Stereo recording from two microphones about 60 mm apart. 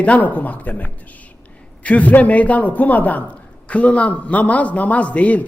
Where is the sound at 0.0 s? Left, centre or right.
Left.